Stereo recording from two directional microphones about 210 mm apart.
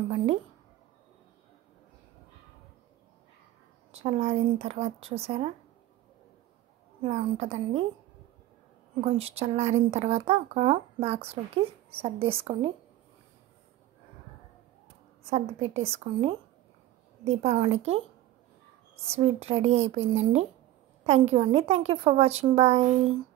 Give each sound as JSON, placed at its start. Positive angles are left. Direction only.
{"t": 3.9, "sound": "speech", "side_deg": -30}
{"t": 7.0, "sound": "speech", "side_deg": -30}
{"t": 9.0, "sound": "speech", "side_deg": -30}
{"t": 15.7, "sound": "a woman's voice", "side_deg": -30}
{"t": 19.1, "sound": "a woman's voice", "side_deg": -30}